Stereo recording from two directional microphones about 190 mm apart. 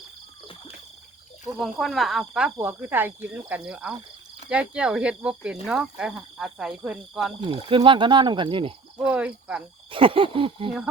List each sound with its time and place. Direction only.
1.5 s speech: centre (ahead or behind)
7.4 s speech: 25° right (ahead or behind)
9.0 s speech: 5° right (ahead or behind)
9.9 s speech: 30° right (ahead or behind)